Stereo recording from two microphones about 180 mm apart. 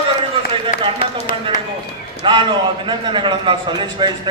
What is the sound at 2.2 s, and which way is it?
A man's voice, 25° right (ahead or behind).